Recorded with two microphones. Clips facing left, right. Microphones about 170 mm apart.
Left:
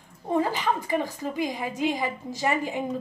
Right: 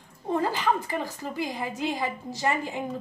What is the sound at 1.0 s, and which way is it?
A woman's voice, 15° left (ahead or behind).